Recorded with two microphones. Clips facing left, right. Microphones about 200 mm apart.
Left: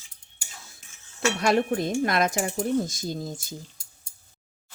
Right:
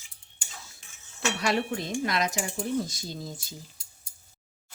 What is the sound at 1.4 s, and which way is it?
Speech, 50° left (ahead or behind).